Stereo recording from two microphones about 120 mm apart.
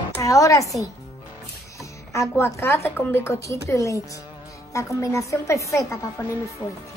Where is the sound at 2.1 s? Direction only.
20° left (ahead or behind).